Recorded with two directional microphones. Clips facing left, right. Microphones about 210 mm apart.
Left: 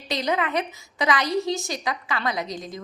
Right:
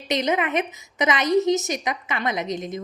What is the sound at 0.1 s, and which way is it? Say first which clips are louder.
A woman's voice: right 2 dB; 20° right (ahead or behind).